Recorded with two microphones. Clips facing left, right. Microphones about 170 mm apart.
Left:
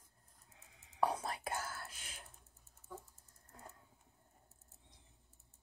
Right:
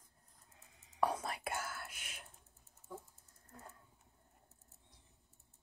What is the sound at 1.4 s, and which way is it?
Whispering, 30° left (ahead or behind).